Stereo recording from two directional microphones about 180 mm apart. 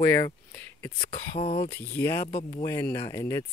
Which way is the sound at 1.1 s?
30° left (ahead or behind).